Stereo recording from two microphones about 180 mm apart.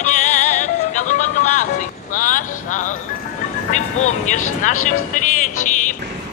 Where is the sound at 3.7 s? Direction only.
40° left (ahead or behind).